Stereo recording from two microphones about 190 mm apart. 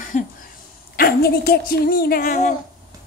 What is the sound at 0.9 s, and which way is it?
Speech, 55° left (ahead or behind).